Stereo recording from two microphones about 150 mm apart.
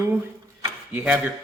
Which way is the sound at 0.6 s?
15° right (ahead or behind).